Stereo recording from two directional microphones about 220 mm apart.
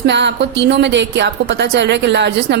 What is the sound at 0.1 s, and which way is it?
A woman's voice, 50° right (ahead or behind).